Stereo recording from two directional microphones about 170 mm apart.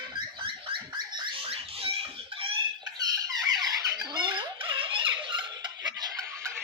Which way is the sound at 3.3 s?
25° right (ahead or behind).